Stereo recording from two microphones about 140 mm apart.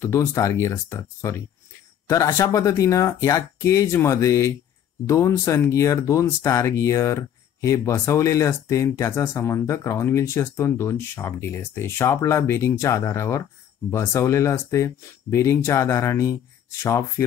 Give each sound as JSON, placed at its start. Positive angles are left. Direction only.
{"t": 0.0, "sound": "speech", "side_deg": 20}